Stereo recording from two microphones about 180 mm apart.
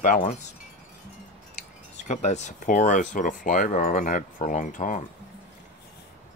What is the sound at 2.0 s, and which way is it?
Speech, 40° left (ahead or behind).